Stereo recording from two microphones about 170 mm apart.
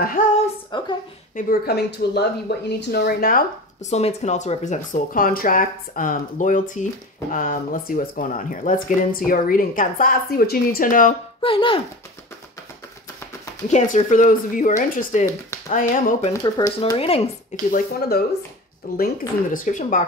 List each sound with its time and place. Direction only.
0.2 s speech: 50° left (ahead or behind)
0.7 s a woman's voice: 25° left (ahead or behind)
1.7 s speech: 80° left; by 3.4 s 60° left (ahead or behind)
3.9 s speech: 40° left (ahead or behind)
11.4 s speech: 30° left (ahead or behind)
13.7 s speech: 45° left (ahead or behind)
16.4 s speech: 25° left (ahead or behind)
16.9 s speech: 35° left (ahead or behind)
17.6 s speech: 60° left (ahead or behind)